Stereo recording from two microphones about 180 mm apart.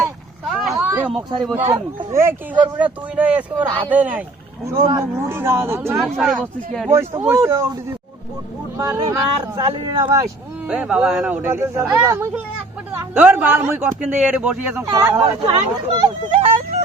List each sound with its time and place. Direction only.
0.9 s a sound: 10° right (ahead or behind)
1.1 s speech: centre (ahead or behind)
6.0 s speech: centre (ahead or behind)
6.8 s speech: 15° right (ahead or behind)
8.8 s speech: 20° right (ahead or behind)
10.7 s speech: 5° right (ahead or behind)
11.6 s a man's voice: 15° right (ahead or behind)
14.8 s speech: 20° right (ahead or behind)